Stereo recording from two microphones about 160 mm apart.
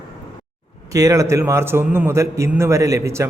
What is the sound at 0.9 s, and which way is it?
A man's voice, 20° right (ahead or behind).